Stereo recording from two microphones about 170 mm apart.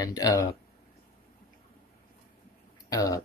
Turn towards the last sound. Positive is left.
turn(degrees=20)  # may be behind; listen again after turning